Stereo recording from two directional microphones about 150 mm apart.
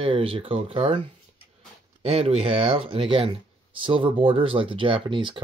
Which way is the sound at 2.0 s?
40° right (ahead or behind).